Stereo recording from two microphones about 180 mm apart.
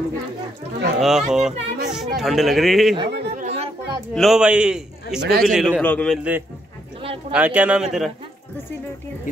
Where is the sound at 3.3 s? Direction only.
40° right (ahead or behind).